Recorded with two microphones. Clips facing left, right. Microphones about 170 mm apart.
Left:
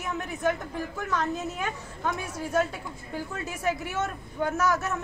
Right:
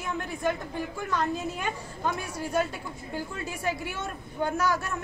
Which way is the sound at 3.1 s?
Centre (ahead or behind).